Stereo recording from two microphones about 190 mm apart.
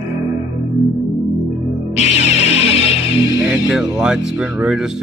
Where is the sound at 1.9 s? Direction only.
35° left (ahead or behind).